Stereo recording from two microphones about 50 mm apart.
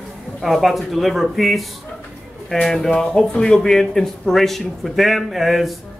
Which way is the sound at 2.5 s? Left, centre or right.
Centre.